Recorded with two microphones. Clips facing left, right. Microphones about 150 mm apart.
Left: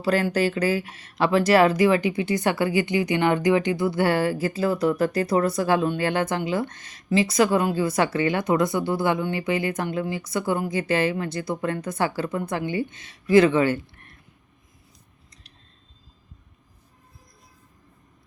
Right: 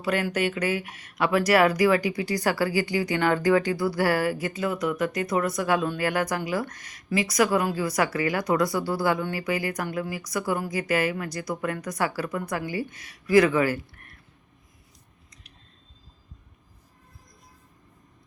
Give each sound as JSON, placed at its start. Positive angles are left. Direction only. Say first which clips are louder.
{"t": 0.0, "sound": "speech", "louder": "left 4 dB", "side_deg": 30}